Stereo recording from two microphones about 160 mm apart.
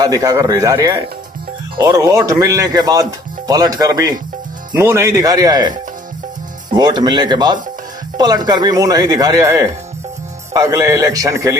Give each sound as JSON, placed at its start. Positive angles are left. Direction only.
{"t": 0.0, "sound": "speech", "side_deg": -20}